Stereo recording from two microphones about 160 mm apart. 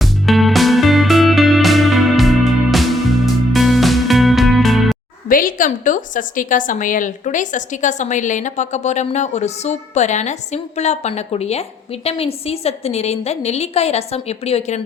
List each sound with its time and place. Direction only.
0.0 s music: centre (ahead or behind)
5.3 s a woman's voice: 60° left (ahead or behind); by 14.8 s 40° left (ahead or behind)